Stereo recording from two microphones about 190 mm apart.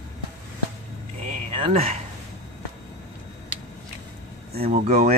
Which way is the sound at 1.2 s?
30° right (ahead or behind).